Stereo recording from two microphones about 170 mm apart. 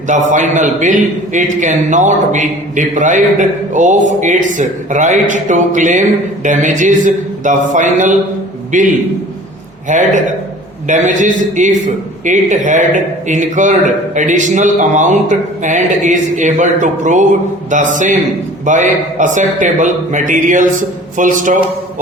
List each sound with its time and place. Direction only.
0.1 s a man's voice: 45° right (ahead or behind)
9.9 s a man's voice: 45° right (ahead or behind)